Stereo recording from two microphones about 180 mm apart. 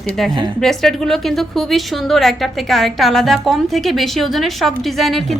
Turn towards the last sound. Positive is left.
turn(degrees=0)  # may be behind; listen again after turning